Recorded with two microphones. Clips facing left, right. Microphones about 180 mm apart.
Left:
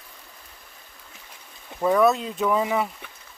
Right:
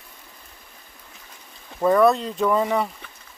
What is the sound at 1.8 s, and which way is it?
Speech, centre (ahead or behind).